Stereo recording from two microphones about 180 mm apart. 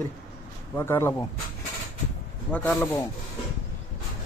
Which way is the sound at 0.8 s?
15° left (ahead or behind).